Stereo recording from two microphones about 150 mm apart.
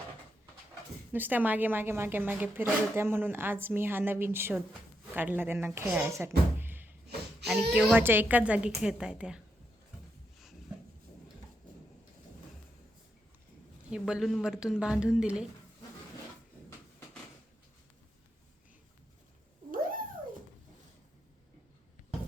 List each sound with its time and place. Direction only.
1.1 s a woman's voice: 10° right (ahead or behind)
6.1 s a sound: 20° right (ahead or behind)
7.4 s a woman's voice: centre (ahead or behind)
13.9 s a woman's voice: 5° right (ahead or behind)